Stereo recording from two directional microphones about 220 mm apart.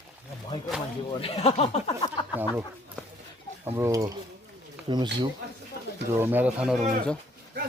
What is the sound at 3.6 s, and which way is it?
Speech, 15° right (ahead or behind).